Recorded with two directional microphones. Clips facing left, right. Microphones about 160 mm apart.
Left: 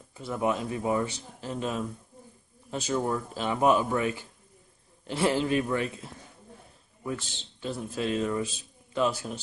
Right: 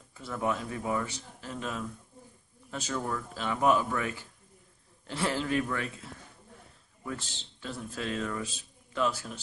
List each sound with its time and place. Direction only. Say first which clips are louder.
0.1 s speech: left 3 dB; 20° left (ahead or behind)
7.6 s speech: left 5 dB; 20° left (ahead or behind)